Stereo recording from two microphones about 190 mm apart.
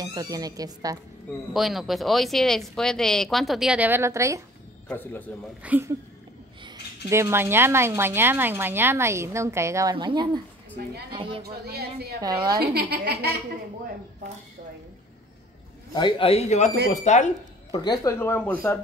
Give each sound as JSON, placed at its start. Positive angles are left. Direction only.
{"t": 0.0, "sound": "speech", "side_deg": -20}
{"t": 1.5, "sound": "speech", "side_deg": 0}
{"t": 4.8, "sound": "speech", "side_deg": 10}
{"t": 5.6, "sound": "speech", "side_deg": -10}
{"t": 11.6, "sound": "a woman's voice", "side_deg": -55}
{"t": 12.2, "sound": "speech", "side_deg": -20}
{"t": 12.5, "sound": "a woman's voice", "side_deg": -55}
{"t": 15.9, "sound": "a man's voice", "side_deg": 25}
{"t": 17.6, "sound": "speech", "side_deg": 20}